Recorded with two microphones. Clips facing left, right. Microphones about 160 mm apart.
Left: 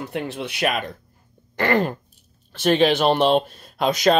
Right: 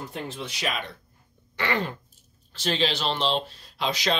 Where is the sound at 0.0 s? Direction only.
70° left (ahead or behind).